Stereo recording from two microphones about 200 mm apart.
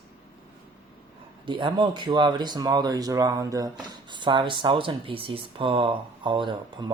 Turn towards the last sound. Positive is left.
turn(degrees=-25)  # may be behind; listen again after turning